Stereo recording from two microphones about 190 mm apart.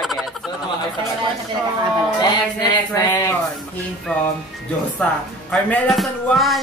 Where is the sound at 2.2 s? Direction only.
20° left (ahead or behind).